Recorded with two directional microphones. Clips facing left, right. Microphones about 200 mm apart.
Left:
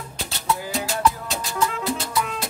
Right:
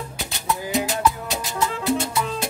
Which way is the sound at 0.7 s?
20° right (ahead or behind).